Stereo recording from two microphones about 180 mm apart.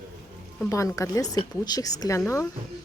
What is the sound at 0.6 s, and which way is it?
Speech, 15° left (ahead or behind).